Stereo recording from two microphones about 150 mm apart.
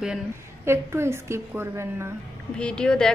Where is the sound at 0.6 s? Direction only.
15° right (ahead or behind).